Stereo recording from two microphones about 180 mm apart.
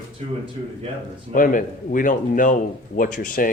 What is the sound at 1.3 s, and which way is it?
Speech, 50° left (ahead or behind).